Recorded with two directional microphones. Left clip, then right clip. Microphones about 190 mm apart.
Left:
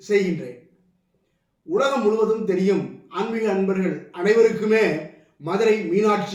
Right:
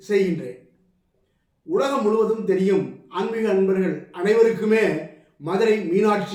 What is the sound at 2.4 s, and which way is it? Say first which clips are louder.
Speech: right 1 dB; 10° right (ahead or behind).